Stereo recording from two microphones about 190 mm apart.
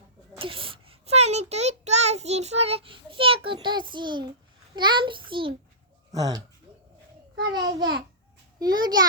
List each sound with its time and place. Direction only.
0.3 s a child's voice: 30° right (ahead or behind)
7.5 s a child's voice: 20° right (ahead or behind)